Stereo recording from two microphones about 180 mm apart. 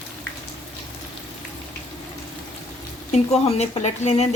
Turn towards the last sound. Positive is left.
turn(degrees=40)  # may be behind; listen again after turning